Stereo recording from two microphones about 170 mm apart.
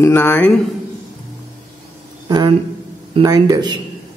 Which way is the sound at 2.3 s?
25° right (ahead or behind).